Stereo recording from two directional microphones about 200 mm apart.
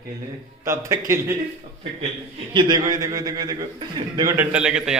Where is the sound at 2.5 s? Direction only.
20° right (ahead or behind).